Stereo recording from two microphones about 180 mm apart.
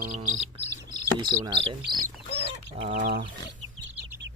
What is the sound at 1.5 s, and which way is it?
Speech, 25° right (ahead or behind).